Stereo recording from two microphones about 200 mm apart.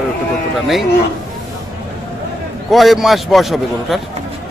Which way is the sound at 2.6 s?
Centre (ahead or behind).